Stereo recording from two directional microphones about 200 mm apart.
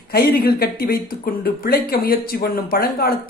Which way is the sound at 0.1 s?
50° left (ahead or behind).